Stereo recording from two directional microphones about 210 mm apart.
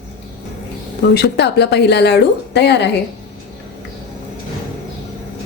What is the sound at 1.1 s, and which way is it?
A woman's voice, 50° left (ahead or behind).